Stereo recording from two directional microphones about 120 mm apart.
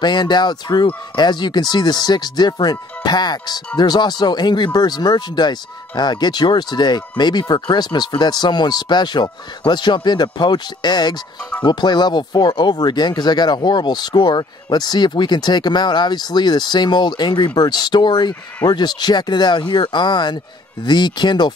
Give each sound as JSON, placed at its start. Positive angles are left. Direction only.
{"t": 0.0, "sound": "speech", "side_deg": 35}